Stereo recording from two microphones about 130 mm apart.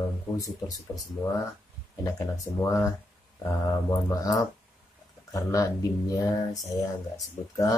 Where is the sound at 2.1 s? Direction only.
25° left (ahead or behind).